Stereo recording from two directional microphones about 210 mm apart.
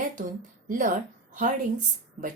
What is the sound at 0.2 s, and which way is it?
Speech, 40° right (ahead or behind).